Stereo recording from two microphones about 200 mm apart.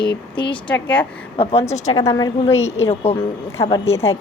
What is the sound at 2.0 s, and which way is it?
Speech, 20° left (ahead or behind).